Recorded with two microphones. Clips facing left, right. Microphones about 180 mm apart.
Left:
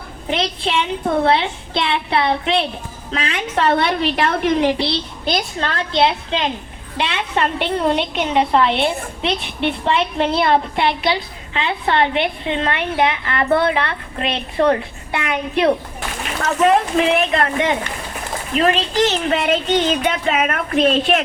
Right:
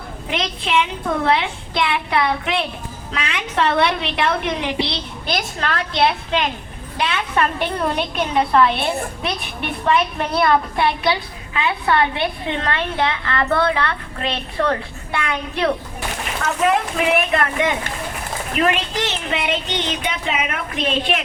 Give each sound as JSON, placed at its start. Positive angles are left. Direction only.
{"t": 0.3, "sound": "a woman's voice", "side_deg": 30}
{"t": 16.6, "sound": "a woman's voice", "side_deg": 30}